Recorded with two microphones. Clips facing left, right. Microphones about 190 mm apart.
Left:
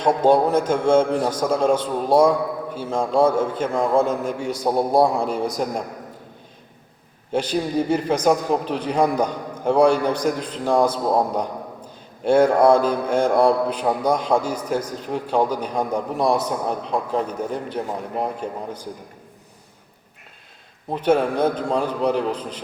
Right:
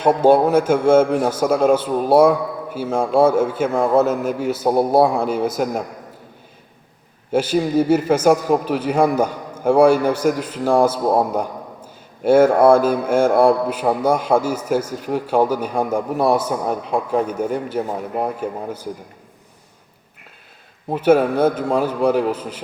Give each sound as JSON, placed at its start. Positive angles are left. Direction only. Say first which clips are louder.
{"t": 0.0, "sound": "mantra", "louder": "right 3 dB", "side_deg": -5}
{"t": 2.7, "sound": "a man's voice", "louder": "right 3 dB", "side_deg": -10}
{"t": 7.3, "sound": "mantra", "louder": "right 5 dB", "side_deg": -5}
{"t": 20.9, "sound": "mantra", "louder": "right 4 dB", "side_deg": -5}